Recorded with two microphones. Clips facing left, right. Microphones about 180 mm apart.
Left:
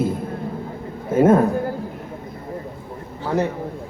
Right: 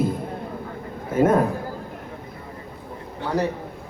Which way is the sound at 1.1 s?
25° left (ahead or behind).